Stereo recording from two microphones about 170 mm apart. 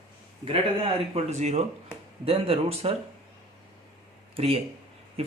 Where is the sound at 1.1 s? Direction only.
40° right (ahead or behind).